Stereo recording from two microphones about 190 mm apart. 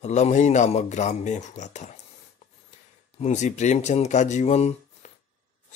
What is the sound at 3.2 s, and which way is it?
Speech, 40° left (ahead or behind).